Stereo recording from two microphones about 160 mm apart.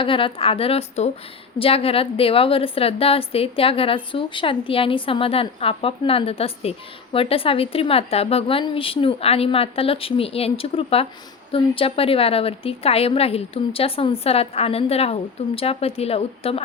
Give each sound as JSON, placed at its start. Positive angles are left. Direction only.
{"t": 0.0, "sound": "a woman's voice", "side_deg": 35}